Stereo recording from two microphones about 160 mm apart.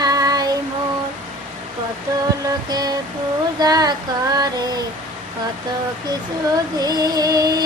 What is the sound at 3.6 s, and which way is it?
Female singing, 25° right (ahead or behind).